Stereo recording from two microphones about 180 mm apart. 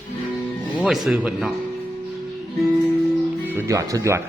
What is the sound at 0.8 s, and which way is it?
Speech, centre (ahead or behind).